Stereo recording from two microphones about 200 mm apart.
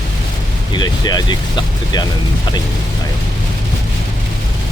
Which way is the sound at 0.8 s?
20° left (ahead or behind).